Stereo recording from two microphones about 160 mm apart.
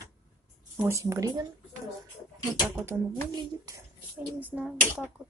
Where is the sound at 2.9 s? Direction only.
15° right (ahead or behind).